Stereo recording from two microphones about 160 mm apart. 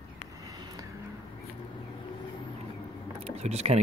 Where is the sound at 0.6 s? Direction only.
25° right (ahead or behind).